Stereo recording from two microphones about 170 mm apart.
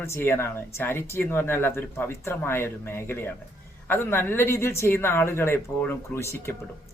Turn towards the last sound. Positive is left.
turn(degrees=15)  # may be behind; listen again after turning